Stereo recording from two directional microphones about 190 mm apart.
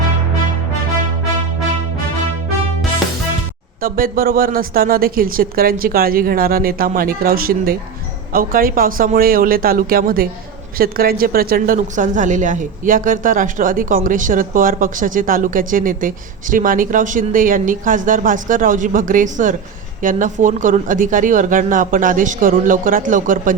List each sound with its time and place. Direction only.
3.8 s speech: 50° right (ahead or behind)